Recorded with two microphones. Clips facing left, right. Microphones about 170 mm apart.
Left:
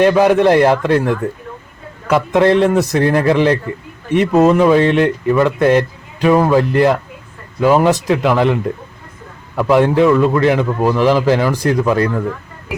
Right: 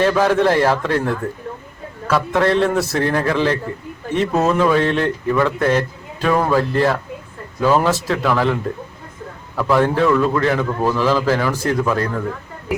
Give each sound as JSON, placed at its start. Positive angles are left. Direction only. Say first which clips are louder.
{"t": 0.0, "sound": "speech", "louder": "left 5 dB", "side_deg": 15}
{"t": 9.6, "sound": "speech", "louder": "left 4 dB", "side_deg": 15}